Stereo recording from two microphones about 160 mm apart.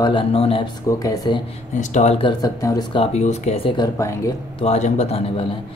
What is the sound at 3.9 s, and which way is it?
Speech, 20° left (ahead or behind).